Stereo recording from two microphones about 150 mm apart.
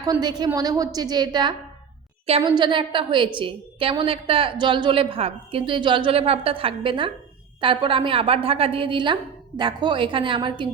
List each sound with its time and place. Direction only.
0.0 s a woman's voice: 25° right (ahead or behind)